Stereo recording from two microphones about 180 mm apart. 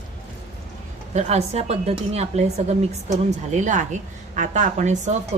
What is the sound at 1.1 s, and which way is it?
A woman's voice, 40° right (ahead or behind).